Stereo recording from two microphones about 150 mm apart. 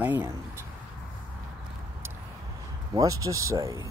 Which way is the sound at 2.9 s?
25° right (ahead or behind).